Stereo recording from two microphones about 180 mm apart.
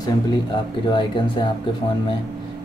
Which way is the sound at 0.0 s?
25° left (ahead or behind).